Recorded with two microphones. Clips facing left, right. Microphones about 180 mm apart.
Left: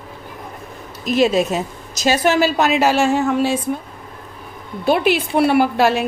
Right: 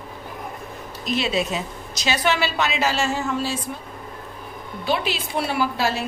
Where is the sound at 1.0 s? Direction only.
45° left (ahead or behind).